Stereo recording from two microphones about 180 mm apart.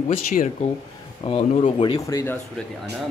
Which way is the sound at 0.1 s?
40° left (ahead or behind).